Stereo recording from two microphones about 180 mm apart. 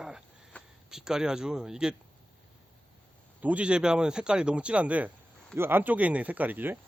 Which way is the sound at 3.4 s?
5° right (ahead or behind).